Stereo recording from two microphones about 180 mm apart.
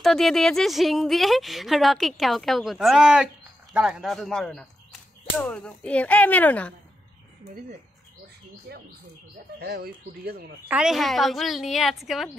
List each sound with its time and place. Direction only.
0.0 s speech: centre (ahead or behind)
9.6 s speech: 60° right (ahead or behind)
10.7 s speech: 5° right (ahead or behind)